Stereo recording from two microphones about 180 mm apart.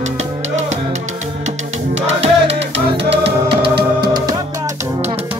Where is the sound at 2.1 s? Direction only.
35° right (ahead or behind).